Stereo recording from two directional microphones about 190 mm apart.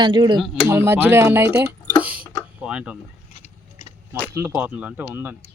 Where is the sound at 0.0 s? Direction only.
25° right (ahead or behind).